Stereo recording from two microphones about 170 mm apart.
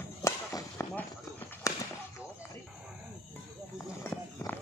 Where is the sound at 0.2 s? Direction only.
20° left (ahead or behind).